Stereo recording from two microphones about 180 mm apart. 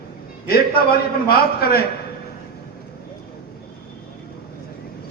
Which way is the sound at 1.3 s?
60° left (ahead or behind).